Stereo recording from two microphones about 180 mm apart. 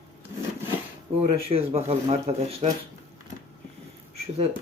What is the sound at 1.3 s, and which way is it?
Speech, 30° right (ahead or behind).